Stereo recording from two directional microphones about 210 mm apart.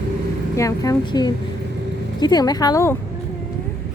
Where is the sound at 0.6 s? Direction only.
15° left (ahead or behind).